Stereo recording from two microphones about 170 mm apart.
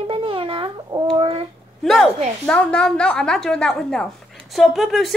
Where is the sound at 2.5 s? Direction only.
5° left (ahead or behind).